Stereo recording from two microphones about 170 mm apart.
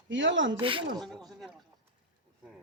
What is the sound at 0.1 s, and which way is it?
Speech, 90° right.